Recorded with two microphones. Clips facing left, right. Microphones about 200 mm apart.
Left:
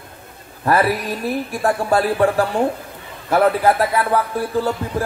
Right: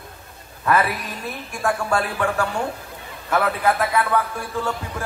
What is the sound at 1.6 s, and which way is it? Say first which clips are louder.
Speech: left 4 dB; 35° left (ahead or behind).